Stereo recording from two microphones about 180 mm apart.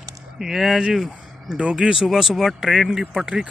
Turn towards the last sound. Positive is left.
turn(degrees=-5)  # may be behind; listen again after turning